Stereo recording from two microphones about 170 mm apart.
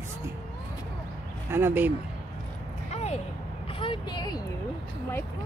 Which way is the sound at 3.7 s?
30° left (ahead or behind).